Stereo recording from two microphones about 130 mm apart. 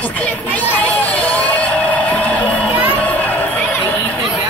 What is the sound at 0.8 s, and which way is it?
Music, 10° left (ahead or behind).